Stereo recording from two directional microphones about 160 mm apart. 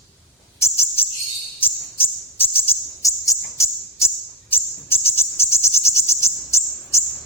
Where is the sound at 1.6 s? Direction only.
15° left (ahead or behind).